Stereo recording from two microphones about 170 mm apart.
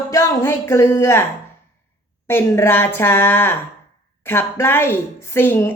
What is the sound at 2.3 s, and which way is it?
A woman's voice, 15° left (ahead or behind).